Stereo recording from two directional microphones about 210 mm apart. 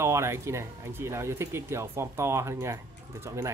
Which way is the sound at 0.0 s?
15° right (ahead or behind).